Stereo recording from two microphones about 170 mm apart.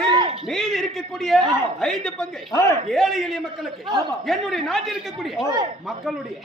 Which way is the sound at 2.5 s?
15° left (ahead or behind).